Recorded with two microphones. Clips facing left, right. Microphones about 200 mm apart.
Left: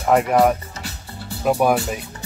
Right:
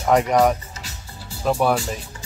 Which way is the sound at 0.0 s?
5° left (ahead or behind).